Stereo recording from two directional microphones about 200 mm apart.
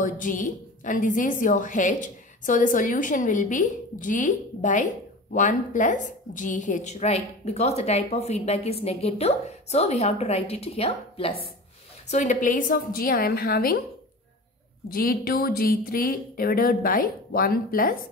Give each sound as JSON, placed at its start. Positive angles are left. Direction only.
{"t": 0.0, "sound": "a woman's voice", "side_deg": 40}
{"t": 14.9, "sound": "speech", "side_deg": 45}